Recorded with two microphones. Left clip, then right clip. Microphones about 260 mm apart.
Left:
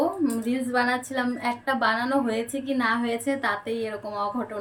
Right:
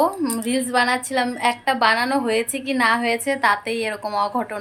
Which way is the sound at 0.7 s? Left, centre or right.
Centre.